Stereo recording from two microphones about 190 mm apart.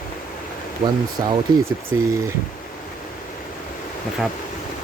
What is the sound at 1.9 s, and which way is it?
Speech, 15° right (ahead or behind).